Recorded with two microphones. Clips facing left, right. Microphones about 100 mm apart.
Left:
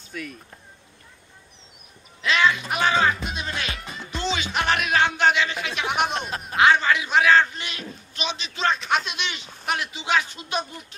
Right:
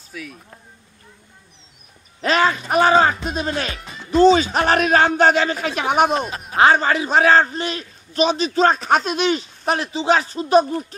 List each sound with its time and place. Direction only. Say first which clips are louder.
0.1 s speech: even; 5° right (ahead or behind)
2.2 s a man's voice: right 4 dB; 40° right (ahead or behind)
6.1 s speech: right 6 dB; centre (ahead or behind)
6.5 s a man's voice: right 3 dB; 40° right (ahead or behind)